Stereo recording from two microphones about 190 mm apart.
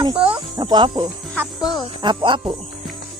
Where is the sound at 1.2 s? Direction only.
5° left (ahead or behind).